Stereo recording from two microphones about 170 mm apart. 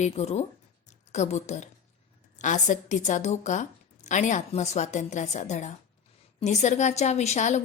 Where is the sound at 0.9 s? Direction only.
45° left (ahead or behind).